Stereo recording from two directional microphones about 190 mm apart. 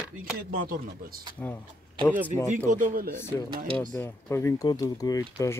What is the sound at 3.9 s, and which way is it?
Speech, 10° left (ahead or behind).